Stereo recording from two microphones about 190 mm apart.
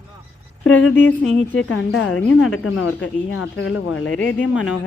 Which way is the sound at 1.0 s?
75° left (ahead or behind).